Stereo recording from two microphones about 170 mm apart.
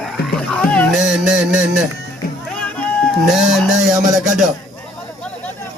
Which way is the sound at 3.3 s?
Centre (ahead or behind).